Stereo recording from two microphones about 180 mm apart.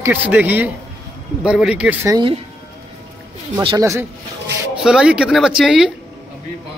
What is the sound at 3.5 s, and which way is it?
Speech, 30° right (ahead or behind).